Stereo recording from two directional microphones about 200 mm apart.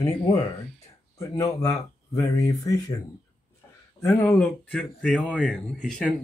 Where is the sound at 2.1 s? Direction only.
15° left (ahead or behind).